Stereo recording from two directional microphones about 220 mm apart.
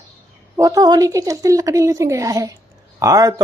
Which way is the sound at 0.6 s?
15° right (ahead or behind).